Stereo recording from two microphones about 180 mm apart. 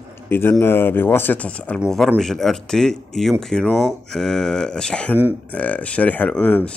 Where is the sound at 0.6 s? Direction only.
10° left (ahead or behind).